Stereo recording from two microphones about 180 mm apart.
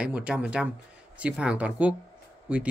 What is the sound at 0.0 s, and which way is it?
Speech, 5° right (ahead or behind).